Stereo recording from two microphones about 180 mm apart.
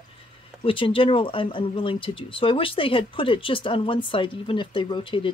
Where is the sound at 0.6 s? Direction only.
30° left (ahead or behind).